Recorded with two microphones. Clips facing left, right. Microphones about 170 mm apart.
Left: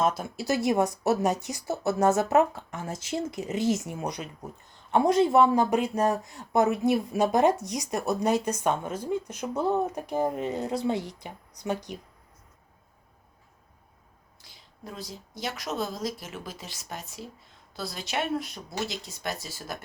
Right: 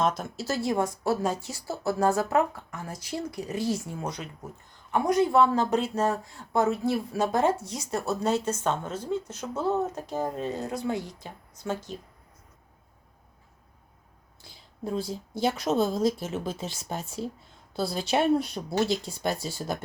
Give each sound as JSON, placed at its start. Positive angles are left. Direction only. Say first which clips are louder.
{"t": 0.0, "sound": "speech", "louder": "left 1 dB", "side_deg": 10}
{"t": 14.8, "sound": "a woman's voice", "louder": "right 9 dB", "side_deg": -30}